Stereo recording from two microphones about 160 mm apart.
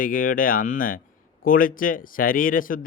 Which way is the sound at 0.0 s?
60° left (ahead or behind).